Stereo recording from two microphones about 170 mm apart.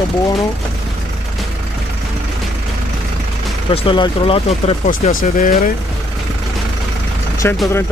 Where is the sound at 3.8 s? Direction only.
30° left (ahead or behind).